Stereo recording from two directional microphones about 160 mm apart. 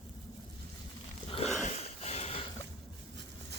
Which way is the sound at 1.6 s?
40° left (ahead or behind).